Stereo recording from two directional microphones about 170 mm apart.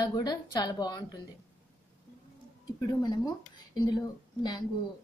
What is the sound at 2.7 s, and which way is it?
Speech, 25° left (ahead or behind).